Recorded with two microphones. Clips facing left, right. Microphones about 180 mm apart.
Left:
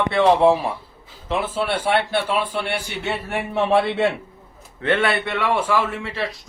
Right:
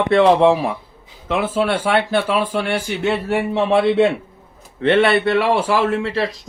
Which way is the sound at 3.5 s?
25° right (ahead or behind).